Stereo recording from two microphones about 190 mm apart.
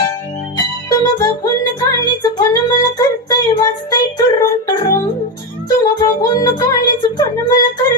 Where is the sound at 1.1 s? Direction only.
20° left (ahead or behind).